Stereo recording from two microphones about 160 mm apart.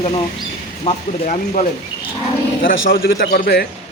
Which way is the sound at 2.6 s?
65° left (ahead or behind).